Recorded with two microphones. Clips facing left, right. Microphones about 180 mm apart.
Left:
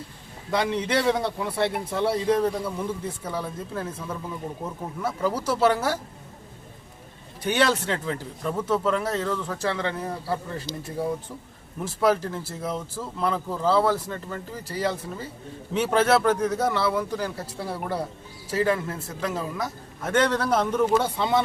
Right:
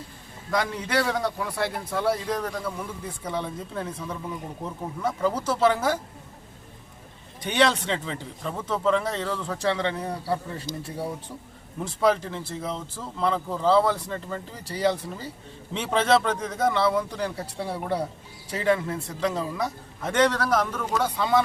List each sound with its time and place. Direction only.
0.5 s a man's voice: 25° left (ahead or behind)
3.2 s speech: 5° left (ahead or behind)
7.4 s speech: 5° left (ahead or behind)
20.3 s a man's voice: 25° left (ahead or behind)